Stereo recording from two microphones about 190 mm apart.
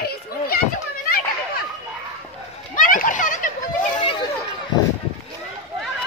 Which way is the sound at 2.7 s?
45° left (ahead or behind).